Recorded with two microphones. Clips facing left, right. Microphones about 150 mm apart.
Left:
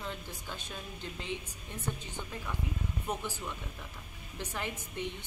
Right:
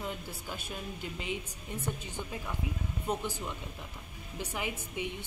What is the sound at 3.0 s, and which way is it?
A woman's voice, 15° right (ahead or behind).